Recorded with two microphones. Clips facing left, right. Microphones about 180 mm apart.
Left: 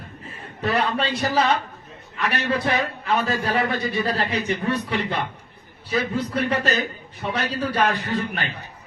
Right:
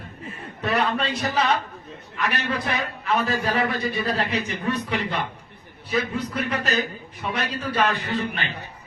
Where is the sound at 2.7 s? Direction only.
35° left (ahead or behind).